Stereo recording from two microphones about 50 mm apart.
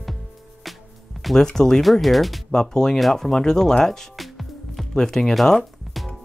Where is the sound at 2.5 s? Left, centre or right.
Centre.